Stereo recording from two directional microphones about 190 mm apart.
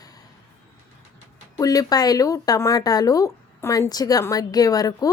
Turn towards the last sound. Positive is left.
turn(degrees=20)  # may be behind; listen again after turning